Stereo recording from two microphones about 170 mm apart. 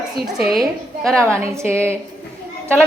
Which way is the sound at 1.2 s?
15° right (ahead or behind).